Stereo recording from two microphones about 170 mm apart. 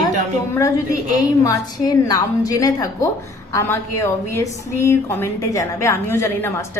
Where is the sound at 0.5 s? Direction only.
15° left (ahead or behind).